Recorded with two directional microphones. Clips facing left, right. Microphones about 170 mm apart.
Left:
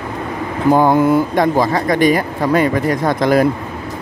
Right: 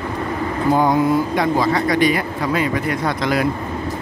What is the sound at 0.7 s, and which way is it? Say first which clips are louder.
Speech: left 4 dB; 55° left (ahead or behind).